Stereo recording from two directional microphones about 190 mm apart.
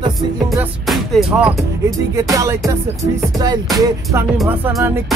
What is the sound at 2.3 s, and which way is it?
Music, 15° right (ahead or behind).